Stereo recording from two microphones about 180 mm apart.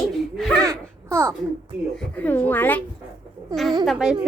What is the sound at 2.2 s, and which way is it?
Speech, 10° left (ahead or behind).